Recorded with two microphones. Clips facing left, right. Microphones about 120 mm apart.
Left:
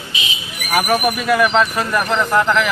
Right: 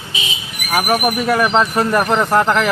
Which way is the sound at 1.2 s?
30° right (ahead or behind).